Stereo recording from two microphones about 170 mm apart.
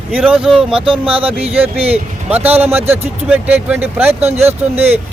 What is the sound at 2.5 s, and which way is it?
Speech, 10° right (ahead or behind).